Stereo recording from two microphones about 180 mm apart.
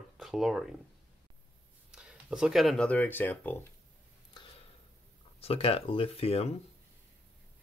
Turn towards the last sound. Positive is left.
turn(degrees=35)  # may be behind; listen again after turning